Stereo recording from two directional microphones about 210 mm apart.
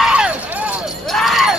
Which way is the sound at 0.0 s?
5° right (ahead or behind).